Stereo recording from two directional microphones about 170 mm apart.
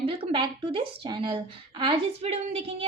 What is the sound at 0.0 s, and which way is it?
A woman's voice, 35° right (ahead or behind).